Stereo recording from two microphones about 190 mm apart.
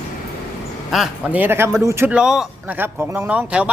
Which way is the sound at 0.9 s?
5° right (ahead or behind).